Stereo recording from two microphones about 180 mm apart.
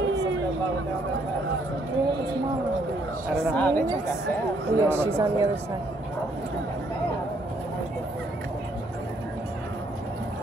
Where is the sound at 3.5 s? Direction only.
10° left (ahead or behind).